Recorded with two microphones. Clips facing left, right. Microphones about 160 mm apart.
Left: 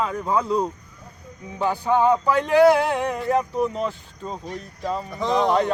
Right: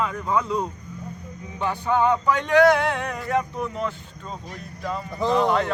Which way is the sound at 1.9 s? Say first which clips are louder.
Left 2 dB; 35° left (ahead or behind).